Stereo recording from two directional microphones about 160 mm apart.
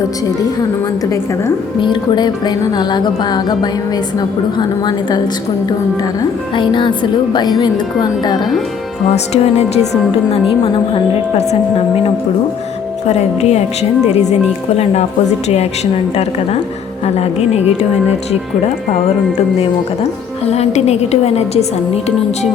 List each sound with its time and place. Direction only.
1.8 s speech: 30° left (ahead or behind)
6.6 s speech: 30° left (ahead or behind)
9.1 s speech: 40° left (ahead or behind)
13.1 s speech: 45° left (ahead or behind)
17.2 s a woman's voice: 40° left (ahead or behind)
20.4 s a woman's voice: 40° left (ahead or behind)